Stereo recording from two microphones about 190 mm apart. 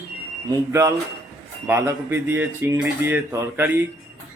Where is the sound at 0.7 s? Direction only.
15° right (ahead or behind).